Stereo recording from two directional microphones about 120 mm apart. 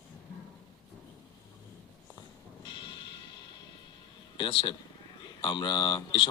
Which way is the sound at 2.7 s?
45° left (ahead or behind).